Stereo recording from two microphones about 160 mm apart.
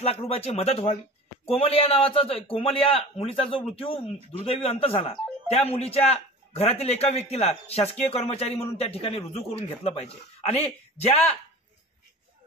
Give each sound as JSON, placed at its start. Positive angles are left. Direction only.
{"t": 0.0, "sound": "a man's voice", "side_deg": 40}